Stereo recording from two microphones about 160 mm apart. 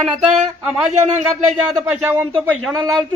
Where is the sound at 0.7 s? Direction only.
5° right (ahead or behind).